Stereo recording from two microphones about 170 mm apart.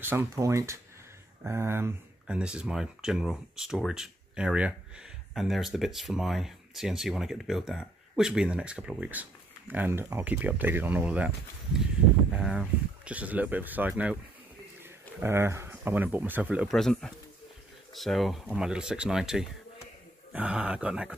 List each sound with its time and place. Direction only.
0.0 s speech: 15° right (ahead or behind)